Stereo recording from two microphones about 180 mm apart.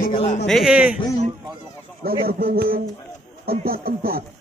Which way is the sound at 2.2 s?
60° right (ahead or behind).